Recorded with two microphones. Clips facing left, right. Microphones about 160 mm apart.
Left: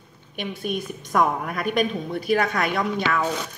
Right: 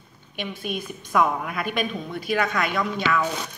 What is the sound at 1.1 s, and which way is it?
A woman's voice, 40° left (ahead or behind).